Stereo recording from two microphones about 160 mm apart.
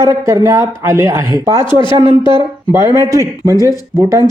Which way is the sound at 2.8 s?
25° left (ahead or behind).